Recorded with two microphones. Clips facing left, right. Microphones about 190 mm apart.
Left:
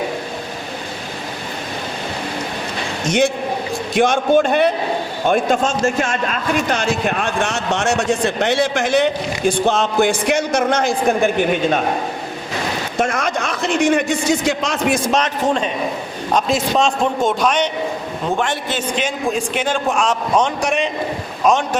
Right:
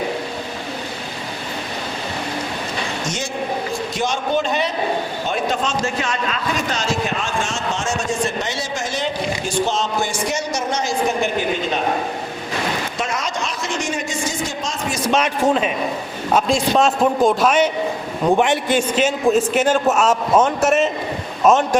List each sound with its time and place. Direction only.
3.1 s a man's voice: 60° left (ahead or behind)
13.0 s a man's voice: 55° left (ahead or behind)
15.1 s a man's voice: 10° right (ahead or behind)
18.3 s a man's voice: 15° right (ahead or behind)